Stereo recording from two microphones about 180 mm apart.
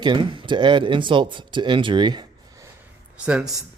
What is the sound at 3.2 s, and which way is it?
Speech, 5° right (ahead or behind).